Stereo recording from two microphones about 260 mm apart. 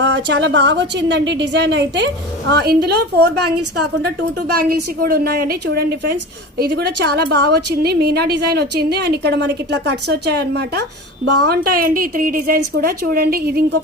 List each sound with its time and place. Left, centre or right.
0.0 s a woman's voice: right
4.5 s a woman's voice: right